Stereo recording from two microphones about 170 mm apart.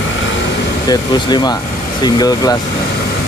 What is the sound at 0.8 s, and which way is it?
Speech, 25° left (ahead or behind).